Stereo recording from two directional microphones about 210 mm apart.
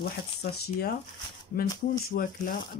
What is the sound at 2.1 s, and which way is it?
Speech, 40° left (ahead or behind).